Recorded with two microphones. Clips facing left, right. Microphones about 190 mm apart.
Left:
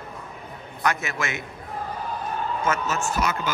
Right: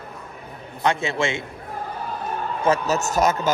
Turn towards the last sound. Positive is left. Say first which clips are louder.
# right 6 dB
turn(degrees=-45)  # may be behind; listen again after turning